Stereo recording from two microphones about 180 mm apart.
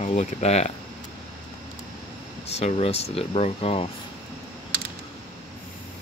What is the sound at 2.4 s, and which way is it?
Speech, 35° left (ahead or behind).